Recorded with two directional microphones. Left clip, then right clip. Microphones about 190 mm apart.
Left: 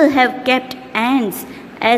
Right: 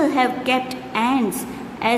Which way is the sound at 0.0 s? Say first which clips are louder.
Left 6 dB; 25° left (ahead or behind).